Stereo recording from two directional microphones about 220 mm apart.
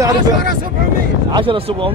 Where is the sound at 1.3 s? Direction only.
25° right (ahead or behind).